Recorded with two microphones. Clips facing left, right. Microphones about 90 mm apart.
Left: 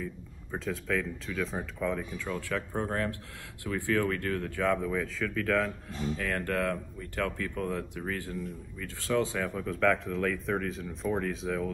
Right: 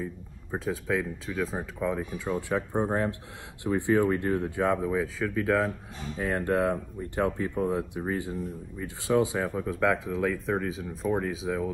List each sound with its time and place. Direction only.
0.7 s speech: 10° right (ahead or behind)
6.1 s speech: 25° right (ahead or behind); by 11.7 s 5° right (ahead or behind)